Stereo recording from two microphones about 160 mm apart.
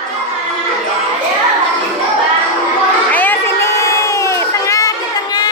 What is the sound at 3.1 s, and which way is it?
Crowd, 10° left (ahead or behind).